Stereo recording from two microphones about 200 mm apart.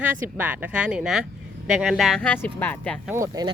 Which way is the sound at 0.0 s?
10° right (ahead or behind).